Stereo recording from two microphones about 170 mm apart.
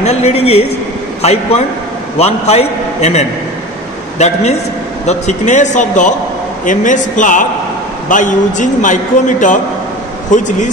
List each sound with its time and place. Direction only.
0.0 s a man's voice: 40° left (ahead or behind)